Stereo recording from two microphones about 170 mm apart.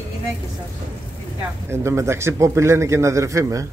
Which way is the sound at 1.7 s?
15° right (ahead or behind).